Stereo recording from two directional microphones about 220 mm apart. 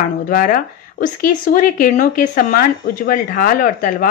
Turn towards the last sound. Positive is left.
turn(degrees=40)  # may be behind; listen again after turning